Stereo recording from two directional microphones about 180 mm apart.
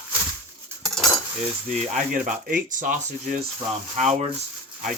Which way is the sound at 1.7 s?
45° right (ahead or behind).